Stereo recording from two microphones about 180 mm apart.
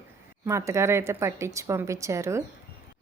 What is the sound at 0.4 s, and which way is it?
A woman's voice, 15° right (ahead or behind).